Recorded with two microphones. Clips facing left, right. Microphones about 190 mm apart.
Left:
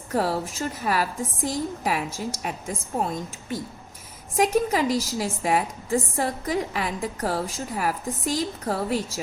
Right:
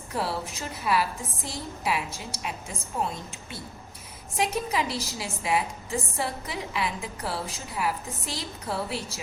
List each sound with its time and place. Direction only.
0.1 s a woman's voice: 45° left (ahead or behind)
4.4 s a woman's voice: 45° left (ahead or behind)